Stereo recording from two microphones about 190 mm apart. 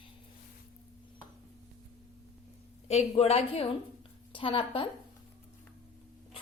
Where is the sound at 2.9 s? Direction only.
35° left (ahead or behind).